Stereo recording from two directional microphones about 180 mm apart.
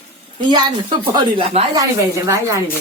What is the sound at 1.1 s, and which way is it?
Speech, 30° right (ahead or behind).